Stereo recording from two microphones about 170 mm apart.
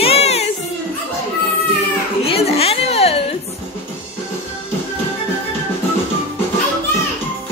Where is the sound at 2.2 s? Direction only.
35° left (ahead or behind).